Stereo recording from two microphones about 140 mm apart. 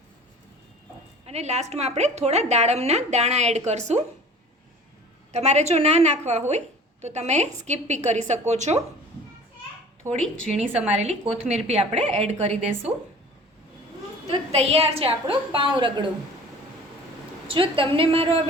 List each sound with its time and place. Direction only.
1.3 s a woman's voice: 50° right (ahead or behind)
5.3 s a woman's voice: 50° right (ahead or behind)
10.8 s a woman's voice: 50° right (ahead or behind)
12.9 s speech: 10° right (ahead or behind)
14.3 s a woman's voice: 45° right (ahead or behind)
17.5 s a woman's voice: 40° right (ahead or behind)